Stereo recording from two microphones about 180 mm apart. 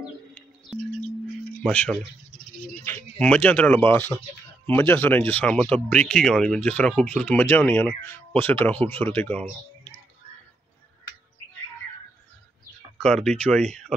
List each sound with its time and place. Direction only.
0.7 s chirp tone: centre (ahead or behind)
1.6 s speech: 5° left (ahead or behind)
2.3 s bird: 50° left (ahead or behind)
2.8 s speech: 15° left (ahead or behind)
13.0 s speech: 5° left (ahead or behind)